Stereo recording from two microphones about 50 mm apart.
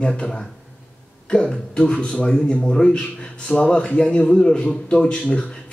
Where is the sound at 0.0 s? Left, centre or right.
Centre.